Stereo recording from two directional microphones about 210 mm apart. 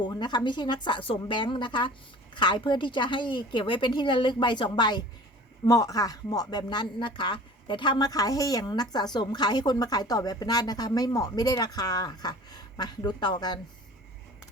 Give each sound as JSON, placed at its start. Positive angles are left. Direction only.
{"t": 0.0, "sound": "speech", "side_deg": 20}